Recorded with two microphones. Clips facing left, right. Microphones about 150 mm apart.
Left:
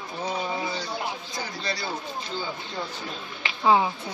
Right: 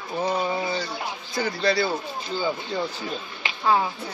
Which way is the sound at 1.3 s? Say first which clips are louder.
Right 14 dB; 65° right (ahead or behind).